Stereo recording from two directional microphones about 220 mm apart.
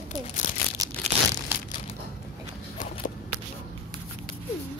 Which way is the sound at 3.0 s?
40° left (ahead or behind).